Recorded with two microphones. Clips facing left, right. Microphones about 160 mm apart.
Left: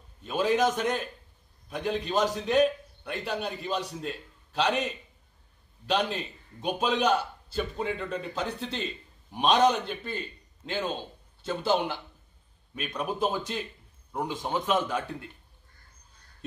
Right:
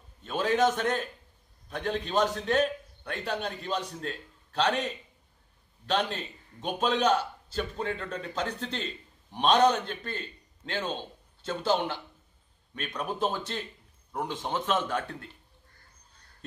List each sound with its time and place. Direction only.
0.2 s a man's voice: 10° left (ahead or behind)